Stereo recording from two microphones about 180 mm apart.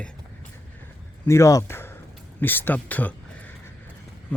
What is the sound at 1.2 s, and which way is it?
Speech, 15° left (ahead or behind).